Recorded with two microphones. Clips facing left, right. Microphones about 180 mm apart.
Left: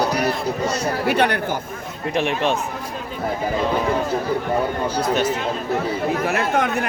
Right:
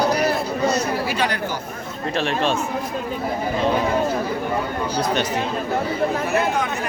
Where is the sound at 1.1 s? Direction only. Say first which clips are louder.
Left 5 dB; 60° left (ahead or behind).